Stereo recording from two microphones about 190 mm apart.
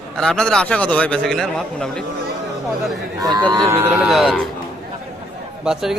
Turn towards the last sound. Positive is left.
turn(degrees=-5)  # may be behind; listen again after turning